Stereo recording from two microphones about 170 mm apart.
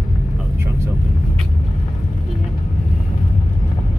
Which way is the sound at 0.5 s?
15° right (ahead or behind).